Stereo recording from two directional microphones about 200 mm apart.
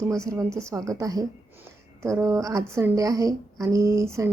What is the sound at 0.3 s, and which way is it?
A woman's voice, 15° right (ahead or behind).